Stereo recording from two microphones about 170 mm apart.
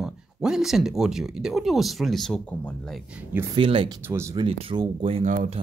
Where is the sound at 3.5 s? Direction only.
30° right (ahead or behind).